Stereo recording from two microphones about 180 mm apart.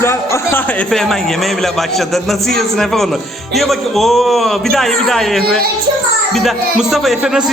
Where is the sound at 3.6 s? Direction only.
Centre (ahead or behind).